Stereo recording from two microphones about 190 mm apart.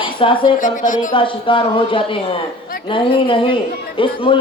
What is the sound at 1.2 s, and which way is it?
A man's voice, 25° left (ahead or behind).